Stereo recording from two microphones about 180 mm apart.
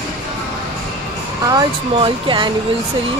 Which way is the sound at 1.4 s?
25° right (ahead or behind).